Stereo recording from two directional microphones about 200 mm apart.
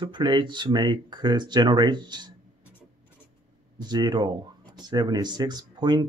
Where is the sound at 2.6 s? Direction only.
10° left (ahead or behind).